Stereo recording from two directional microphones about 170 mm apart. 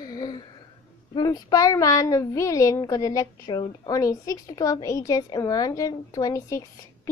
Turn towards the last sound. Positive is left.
turn(degrees=20)  # may be behind; listen again after turning